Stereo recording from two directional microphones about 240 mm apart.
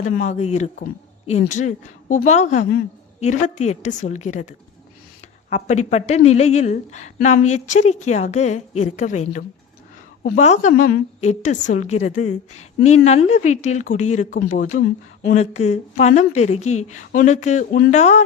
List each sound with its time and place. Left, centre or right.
0.0 s a woman's voice: left